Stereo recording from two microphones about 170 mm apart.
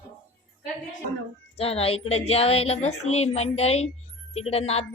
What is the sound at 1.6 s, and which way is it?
Speech, 35° left (ahead or behind).